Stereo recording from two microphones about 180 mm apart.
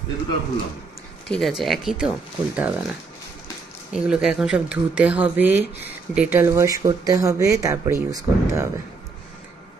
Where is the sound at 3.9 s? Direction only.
5° right (ahead or behind).